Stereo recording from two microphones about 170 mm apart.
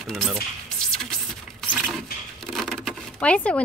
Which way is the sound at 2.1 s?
60° left (ahead or behind).